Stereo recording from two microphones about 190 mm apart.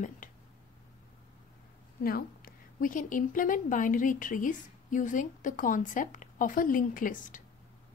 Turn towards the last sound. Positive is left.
turn(degrees=45)  # may be behind; listen again after turning